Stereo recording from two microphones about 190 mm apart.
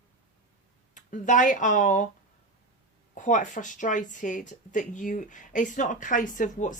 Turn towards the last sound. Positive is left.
turn(degrees=40)  # may be behind; listen again after turning